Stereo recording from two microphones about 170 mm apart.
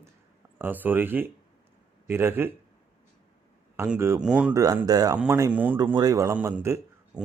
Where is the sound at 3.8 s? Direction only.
15° right (ahead or behind).